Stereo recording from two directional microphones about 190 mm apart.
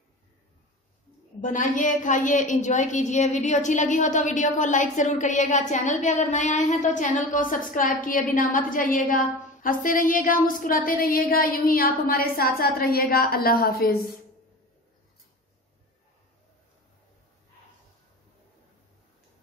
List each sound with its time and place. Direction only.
1.4 s a woman's voice: 40° left (ahead or behind)